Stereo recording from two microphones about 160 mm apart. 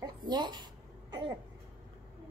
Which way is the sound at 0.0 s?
25° right (ahead or behind).